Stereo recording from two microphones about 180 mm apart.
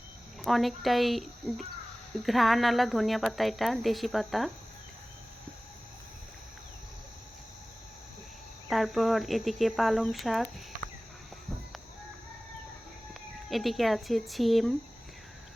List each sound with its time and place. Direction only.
0.4 s a woman's voice: centre (ahead or behind)
8.7 s a woman's voice: centre (ahead or behind)
13.5 s a woman's voice: centre (ahead or behind)